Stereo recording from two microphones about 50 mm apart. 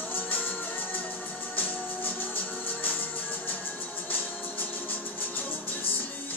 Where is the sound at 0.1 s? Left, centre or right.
Left.